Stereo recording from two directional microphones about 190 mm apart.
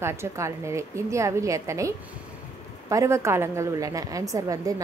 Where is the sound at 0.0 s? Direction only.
15° right (ahead or behind).